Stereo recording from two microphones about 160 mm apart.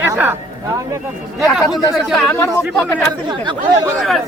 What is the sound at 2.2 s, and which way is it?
Speech, 15° left (ahead or behind).